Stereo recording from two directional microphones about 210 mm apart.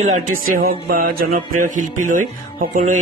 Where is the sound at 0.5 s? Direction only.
45° right (ahead or behind).